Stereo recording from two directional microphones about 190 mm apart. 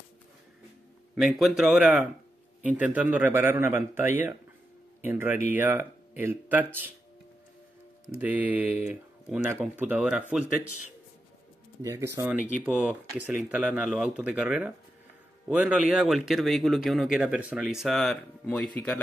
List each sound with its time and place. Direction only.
1.1 s speech: centre (ahead or behind)
8.2 s speech: 10° right (ahead or behind)
11.8 s speech: 15° right (ahead or behind); by 18.7 s 5° left (ahead or behind)